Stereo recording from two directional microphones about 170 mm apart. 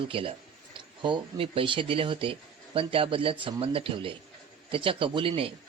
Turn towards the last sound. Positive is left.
turn(degrees=-30)  # may be behind; listen again after turning